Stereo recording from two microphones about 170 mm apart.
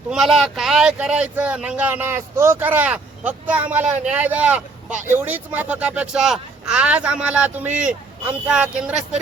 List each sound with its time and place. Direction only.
0.1 s speech: centre (ahead or behind)